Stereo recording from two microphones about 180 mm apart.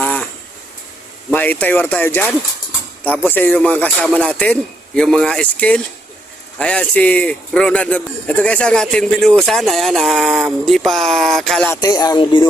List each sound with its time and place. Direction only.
0.0 s a sound: 5° left (ahead or behind)
1.3 s a man's voice: 10° left (ahead or behind)
11.7 s music: 20° left (ahead or behind)